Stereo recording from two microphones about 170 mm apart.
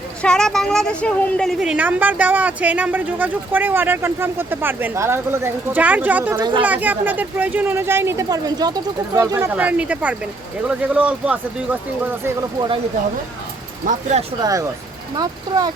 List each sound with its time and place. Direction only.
0.2 s a woman's voice: 5° left (ahead or behind); by 9.6 s 20° right (ahead or behind)
9.6 s a woman's voice: 10° right (ahead or behind)
12.5 s speech: 30° right (ahead or behind)
13.8 s speech: 40° right (ahead or behind)
15.1 s speech: 25° right (ahead or behind)